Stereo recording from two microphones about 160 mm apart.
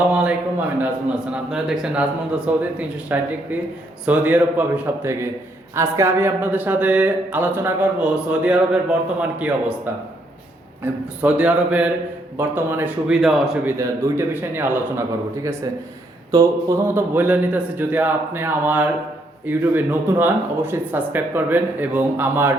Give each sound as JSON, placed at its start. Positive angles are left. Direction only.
{"t": 0.1, "sound": "a man's voice", "side_deg": -10}
{"t": 5.7, "sound": "a man's voice", "side_deg": -15}
{"t": 13.7, "sound": "a man's voice", "side_deg": -20}
{"t": 16.3, "sound": "a man's voice", "side_deg": -20}